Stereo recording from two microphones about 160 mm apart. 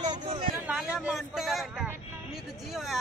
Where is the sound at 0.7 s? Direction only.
5° right (ahead or behind).